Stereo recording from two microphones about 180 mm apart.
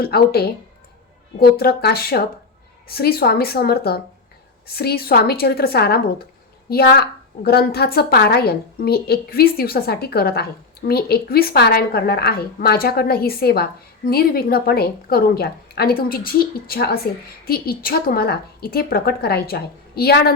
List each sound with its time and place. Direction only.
0.0 s a woman's voice: 60° left (ahead or behind)